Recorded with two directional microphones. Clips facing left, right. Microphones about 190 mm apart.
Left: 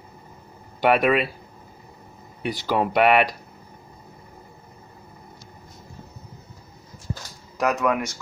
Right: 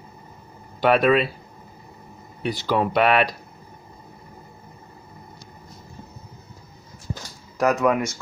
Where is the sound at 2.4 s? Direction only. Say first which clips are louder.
Right 1 dB; 15° left (ahead or behind).